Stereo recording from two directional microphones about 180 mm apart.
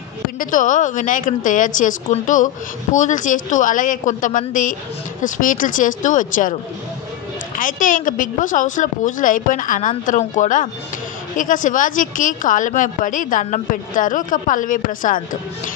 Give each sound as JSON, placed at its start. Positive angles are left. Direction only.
{"t": 0.4, "sound": "a woman's voice", "side_deg": 45}
{"t": 7.5, "sound": "a woman's voice", "side_deg": 50}